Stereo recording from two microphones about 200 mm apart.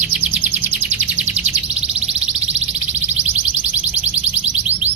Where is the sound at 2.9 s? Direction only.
10° right (ahead or behind).